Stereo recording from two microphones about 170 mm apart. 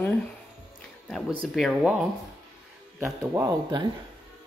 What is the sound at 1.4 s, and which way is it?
Speech, centre (ahead or behind).